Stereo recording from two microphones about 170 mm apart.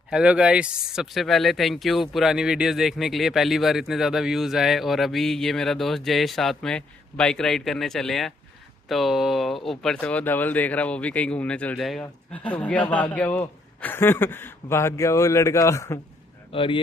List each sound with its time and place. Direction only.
0.1 s speech: 5° right (ahead or behind); by 16.0 s 15° left (ahead or behind)
16.5 s speech: 30° left (ahead or behind)